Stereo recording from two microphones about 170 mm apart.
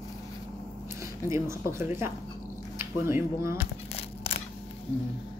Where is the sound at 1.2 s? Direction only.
15° right (ahead or behind).